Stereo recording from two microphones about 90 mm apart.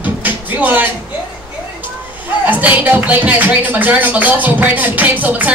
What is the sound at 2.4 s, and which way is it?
Speech, 20° right (ahead or behind).